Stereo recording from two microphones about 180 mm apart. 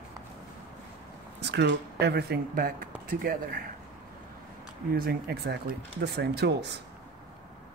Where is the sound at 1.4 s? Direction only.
70° right (ahead or behind).